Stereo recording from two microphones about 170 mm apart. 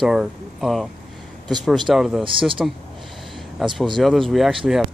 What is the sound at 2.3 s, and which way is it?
Speech, 30° right (ahead or behind).